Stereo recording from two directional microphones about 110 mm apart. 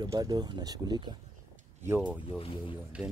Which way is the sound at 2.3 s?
50° left (ahead or behind).